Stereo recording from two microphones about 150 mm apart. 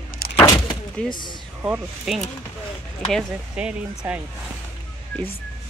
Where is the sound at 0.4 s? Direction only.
30° left (ahead or behind).